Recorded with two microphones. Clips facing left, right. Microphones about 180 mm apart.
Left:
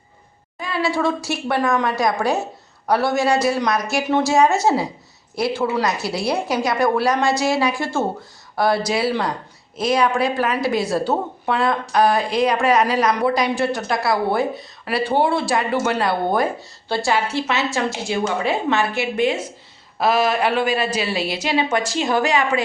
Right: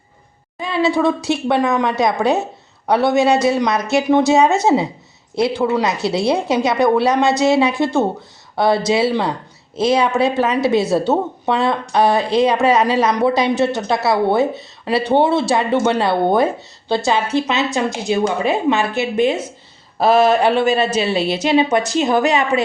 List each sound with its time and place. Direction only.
0.6 s a woman's voice: 20° right (ahead or behind)